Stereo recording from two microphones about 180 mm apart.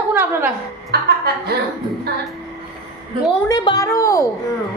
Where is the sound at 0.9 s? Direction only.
60° right (ahead or behind).